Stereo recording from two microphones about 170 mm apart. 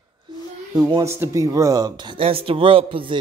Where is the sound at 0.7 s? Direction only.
25° right (ahead or behind).